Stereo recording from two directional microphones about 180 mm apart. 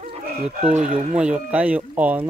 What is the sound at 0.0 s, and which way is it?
Chicken, 35° right (ahead or behind).